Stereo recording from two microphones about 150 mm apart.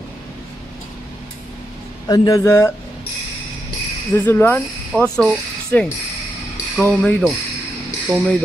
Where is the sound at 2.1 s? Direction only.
20° left (ahead or behind).